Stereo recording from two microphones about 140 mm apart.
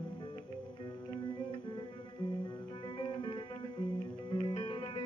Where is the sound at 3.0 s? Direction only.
35° left (ahead or behind).